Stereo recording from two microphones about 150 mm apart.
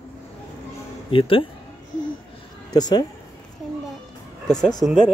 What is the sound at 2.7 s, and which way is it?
Speech, 25° left (ahead or behind).